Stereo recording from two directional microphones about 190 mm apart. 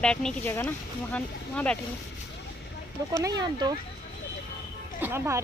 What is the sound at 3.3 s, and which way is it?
Speech, 20° right (ahead or behind).